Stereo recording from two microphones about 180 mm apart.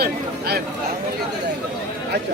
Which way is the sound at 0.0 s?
60° right (ahead or behind).